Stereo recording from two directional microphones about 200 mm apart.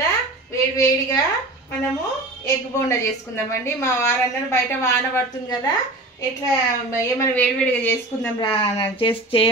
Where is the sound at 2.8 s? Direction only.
15° left (ahead or behind).